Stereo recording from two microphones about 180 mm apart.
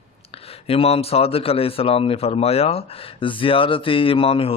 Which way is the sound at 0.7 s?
30° left (ahead or behind).